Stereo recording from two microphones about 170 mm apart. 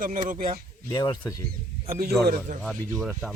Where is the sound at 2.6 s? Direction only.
Centre (ahead or behind).